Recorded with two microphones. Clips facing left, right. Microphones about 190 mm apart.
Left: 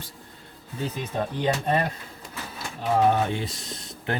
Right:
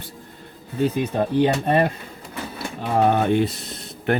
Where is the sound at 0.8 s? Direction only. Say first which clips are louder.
Right 8 dB; 60° right (ahead or behind).